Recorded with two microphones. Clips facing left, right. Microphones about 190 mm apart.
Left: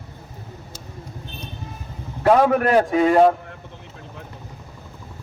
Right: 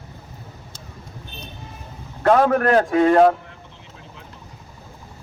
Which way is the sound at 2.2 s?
10° left (ahead or behind).